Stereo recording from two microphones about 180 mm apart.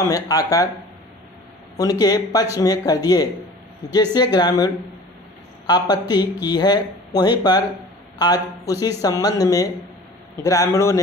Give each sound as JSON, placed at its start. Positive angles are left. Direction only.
{"t": 0.0, "sound": "speech", "side_deg": 20}
{"t": 1.8, "sound": "speech", "side_deg": 20}
{"t": 5.9, "sound": "a man's voice", "side_deg": 20}